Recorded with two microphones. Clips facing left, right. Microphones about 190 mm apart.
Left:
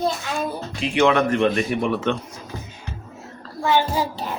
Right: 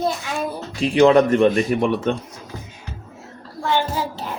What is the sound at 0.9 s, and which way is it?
Speech, 35° right (ahead or behind).